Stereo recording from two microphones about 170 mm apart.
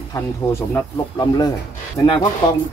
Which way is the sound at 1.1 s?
25° left (ahead or behind).